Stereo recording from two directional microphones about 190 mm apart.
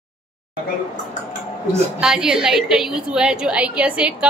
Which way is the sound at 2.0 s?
5° right (ahead or behind).